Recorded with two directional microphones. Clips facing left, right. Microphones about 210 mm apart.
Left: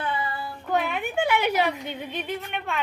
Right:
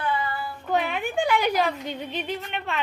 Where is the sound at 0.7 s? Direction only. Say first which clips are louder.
Right 1 dB; centre (ahead or behind).